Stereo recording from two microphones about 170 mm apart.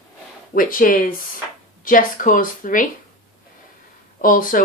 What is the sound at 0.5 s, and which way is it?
Speech, 55° left (ahead or behind).